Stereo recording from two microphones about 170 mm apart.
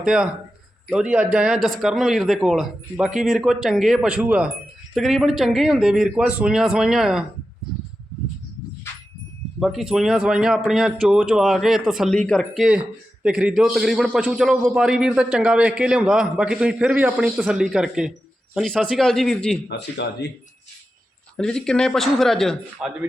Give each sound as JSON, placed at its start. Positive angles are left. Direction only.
{"t": 0.0, "sound": "a man's voice", "side_deg": -5}
{"t": 9.6, "sound": "a man's voice", "side_deg": 0}
{"t": 19.6, "sound": "speech", "side_deg": 80}
{"t": 21.3, "sound": "a man's voice", "side_deg": 5}